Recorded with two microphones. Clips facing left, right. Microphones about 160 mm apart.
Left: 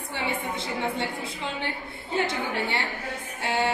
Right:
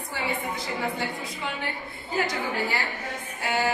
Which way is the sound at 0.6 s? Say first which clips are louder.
Left 1 dB; 25° left (ahead or behind).